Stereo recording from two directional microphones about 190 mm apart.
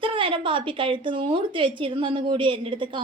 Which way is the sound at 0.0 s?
25° right (ahead or behind).